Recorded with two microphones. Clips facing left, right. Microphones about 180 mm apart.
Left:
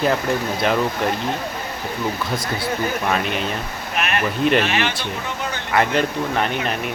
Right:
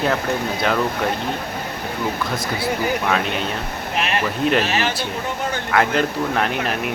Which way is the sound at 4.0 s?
25° right (ahead or behind).